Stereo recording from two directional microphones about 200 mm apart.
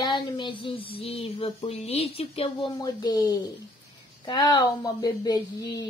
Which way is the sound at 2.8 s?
20° left (ahead or behind).